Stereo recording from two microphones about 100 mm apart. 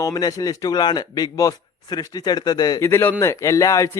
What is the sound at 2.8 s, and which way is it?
A man's voice, 25° left (ahead or behind).